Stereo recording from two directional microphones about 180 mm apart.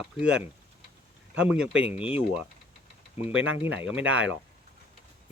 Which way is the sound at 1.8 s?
35° left (ahead or behind).